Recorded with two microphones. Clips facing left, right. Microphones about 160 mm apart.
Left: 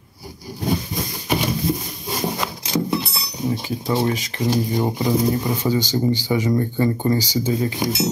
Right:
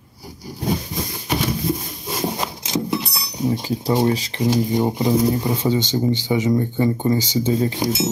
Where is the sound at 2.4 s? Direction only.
20° right (ahead or behind).